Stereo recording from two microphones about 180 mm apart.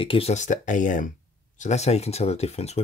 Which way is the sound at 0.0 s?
30° left (ahead or behind).